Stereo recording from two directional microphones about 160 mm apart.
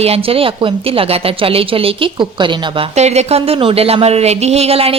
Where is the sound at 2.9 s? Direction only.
45° right (ahead or behind).